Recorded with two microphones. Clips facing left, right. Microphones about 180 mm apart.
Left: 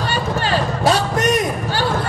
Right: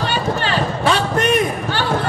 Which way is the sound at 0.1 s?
40° left (ahead or behind).